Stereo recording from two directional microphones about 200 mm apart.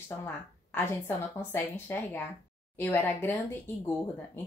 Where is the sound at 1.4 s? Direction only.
10° left (ahead or behind).